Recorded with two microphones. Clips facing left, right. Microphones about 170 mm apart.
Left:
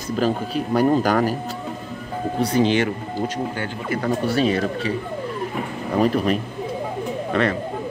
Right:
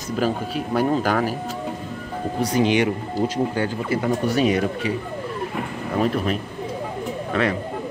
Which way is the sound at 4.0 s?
15° right (ahead or behind).